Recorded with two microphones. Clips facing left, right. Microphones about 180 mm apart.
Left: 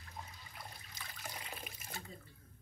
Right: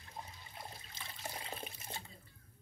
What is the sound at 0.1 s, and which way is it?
Toilet flush, 25° right (ahead or behind).